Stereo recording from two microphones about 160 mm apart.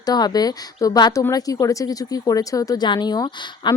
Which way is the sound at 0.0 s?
25° left (ahead or behind).